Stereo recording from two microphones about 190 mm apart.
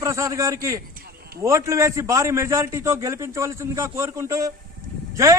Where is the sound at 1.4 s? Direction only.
15° right (ahead or behind).